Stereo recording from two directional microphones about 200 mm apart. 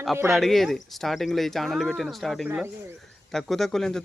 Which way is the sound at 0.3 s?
Centre (ahead or behind).